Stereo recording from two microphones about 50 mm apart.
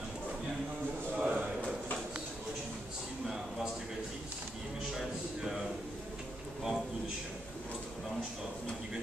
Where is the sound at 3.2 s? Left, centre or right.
Centre.